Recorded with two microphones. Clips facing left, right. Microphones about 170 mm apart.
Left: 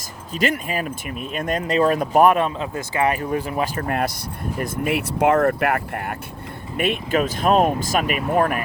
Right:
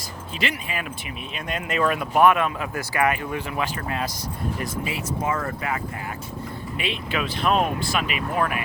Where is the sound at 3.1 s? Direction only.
40° left (ahead or behind).